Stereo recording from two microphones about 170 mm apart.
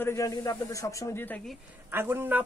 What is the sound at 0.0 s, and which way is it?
Speech, 15° left (ahead or behind).